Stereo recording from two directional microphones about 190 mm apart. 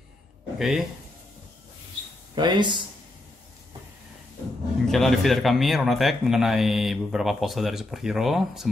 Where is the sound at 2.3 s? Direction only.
25° right (ahead or behind).